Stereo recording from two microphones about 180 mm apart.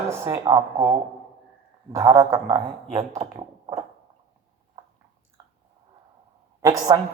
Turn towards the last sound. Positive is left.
turn(degrees=-20)  # may be behind; listen again after turning